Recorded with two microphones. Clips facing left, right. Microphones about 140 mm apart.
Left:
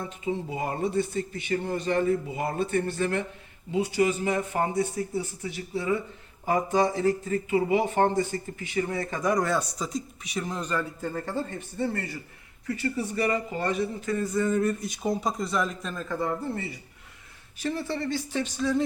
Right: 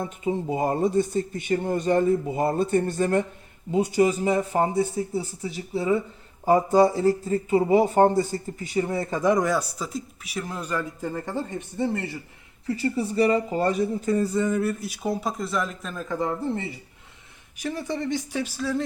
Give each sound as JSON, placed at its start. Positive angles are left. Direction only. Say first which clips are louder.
{"t": 0.0, "sound": "a man's voice", "louder": "right 4 dB", "side_deg": -50}
{"t": 8.3, "sound": "speech", "louder": "right 3 dB", "side_deg": -25}
{"t": 9.5, "sound": "speech", "louder": "right 2 dB", "side_deg": -5}
{"t": 12.6, "sound": "a man's voice", "louder": "right 4 dB", "side_deg": -30}
{"t": 14.5, "sound": "speech", "louder": "even", "side_deg": -5}